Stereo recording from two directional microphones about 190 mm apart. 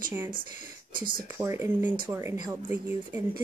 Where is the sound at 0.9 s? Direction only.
50° right (ahead or behind).